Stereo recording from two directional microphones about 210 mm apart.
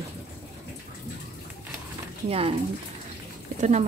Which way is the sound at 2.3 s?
30° right (ahead or behind).